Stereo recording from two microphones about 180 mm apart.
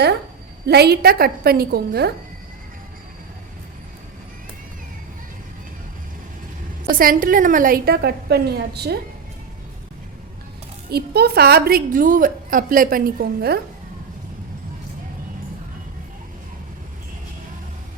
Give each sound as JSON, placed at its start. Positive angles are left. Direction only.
{"t": 0.7, "sound": "a woman's voice", "side_deg": -65}
{"t": 6.8, "sound": "a woman's voice", "side_deg": -50}
{"t": 10.8, "sound": "a woman's voice", "side_deg": -65}